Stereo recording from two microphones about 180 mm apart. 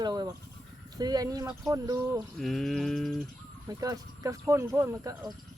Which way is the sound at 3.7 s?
20° right (ahead or behind).